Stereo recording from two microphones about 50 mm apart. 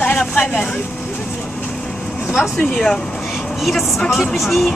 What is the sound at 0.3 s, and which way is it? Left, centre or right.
Speech, left.